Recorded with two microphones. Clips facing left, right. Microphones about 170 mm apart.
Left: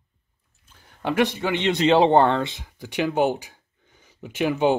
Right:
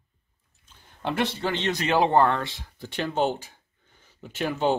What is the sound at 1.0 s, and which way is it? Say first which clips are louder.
Speech: left 4 dB; 15° left (ahead or behind).